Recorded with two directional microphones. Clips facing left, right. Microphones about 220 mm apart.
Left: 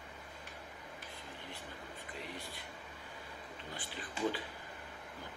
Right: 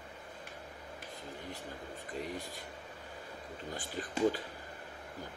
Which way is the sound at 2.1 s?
45° right (ahead or behind).